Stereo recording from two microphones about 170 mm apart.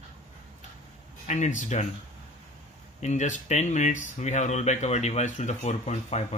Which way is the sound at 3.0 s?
45° left (ahead or behind).